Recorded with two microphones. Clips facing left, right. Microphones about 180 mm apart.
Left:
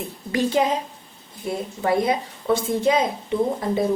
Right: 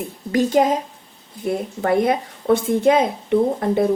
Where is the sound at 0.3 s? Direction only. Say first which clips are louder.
Right 4 dB; 45° right (ahead or behind).